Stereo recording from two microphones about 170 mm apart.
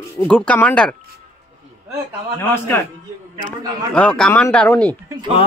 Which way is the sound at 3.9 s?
5° left (ahead or behind).